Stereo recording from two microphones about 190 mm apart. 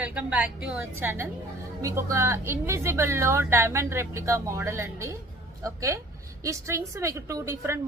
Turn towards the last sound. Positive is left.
turn(degrees=-15)  # may be behind; listen again after turning